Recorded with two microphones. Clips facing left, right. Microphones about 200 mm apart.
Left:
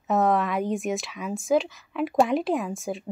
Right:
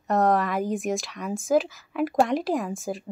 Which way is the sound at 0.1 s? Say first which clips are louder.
Even; centre (ahead or behind).